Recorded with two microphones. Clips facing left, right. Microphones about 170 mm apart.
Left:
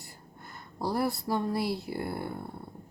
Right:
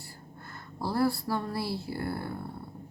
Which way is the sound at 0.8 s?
15° left (ahead or behind).